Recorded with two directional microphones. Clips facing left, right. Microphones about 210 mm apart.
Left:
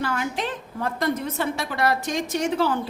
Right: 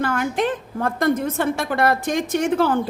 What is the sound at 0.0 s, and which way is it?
A woman's voice, 55° right (ahead or behind).